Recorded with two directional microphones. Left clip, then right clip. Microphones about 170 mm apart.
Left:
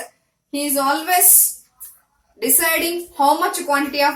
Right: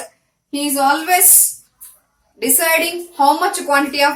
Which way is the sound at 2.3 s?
30° right (ahead or behind).